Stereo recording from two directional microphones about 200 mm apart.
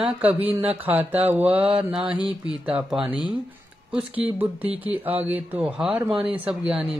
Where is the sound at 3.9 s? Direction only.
5° right (ahead or behind).